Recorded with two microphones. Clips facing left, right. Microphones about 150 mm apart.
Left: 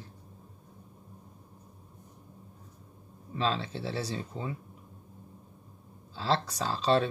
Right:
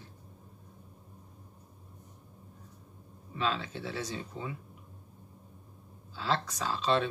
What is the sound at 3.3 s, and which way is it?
Speech, 30° left (ahead or behind).